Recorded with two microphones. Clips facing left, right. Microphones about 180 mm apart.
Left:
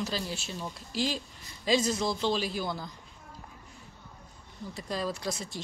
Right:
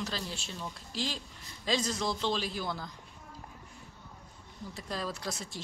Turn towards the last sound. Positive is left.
turn(degrees=0)  # may be behind; listen again after turning